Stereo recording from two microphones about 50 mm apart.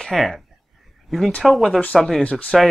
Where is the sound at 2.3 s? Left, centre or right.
Left.